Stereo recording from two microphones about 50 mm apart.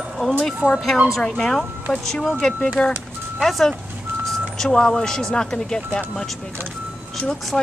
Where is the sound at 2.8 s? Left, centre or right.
Left.